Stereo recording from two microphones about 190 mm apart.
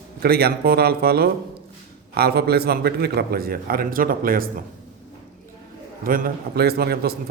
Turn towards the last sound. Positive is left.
turn(degrees=-55)  # may be behind; listen again after turning